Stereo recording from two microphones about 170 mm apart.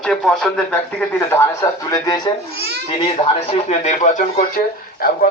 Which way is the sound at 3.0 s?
35° left (ahead or behind).